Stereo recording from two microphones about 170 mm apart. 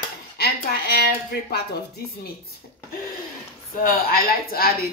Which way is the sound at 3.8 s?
60° left (ahead or behind).